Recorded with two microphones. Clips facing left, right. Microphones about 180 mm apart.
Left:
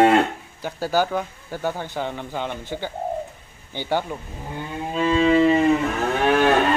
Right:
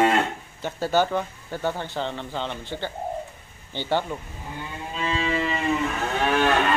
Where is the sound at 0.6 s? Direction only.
10° left (ahead or behind).